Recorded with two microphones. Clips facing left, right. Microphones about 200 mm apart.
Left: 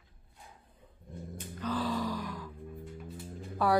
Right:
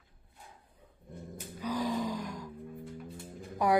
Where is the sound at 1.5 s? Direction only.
10° right (ahead or behind).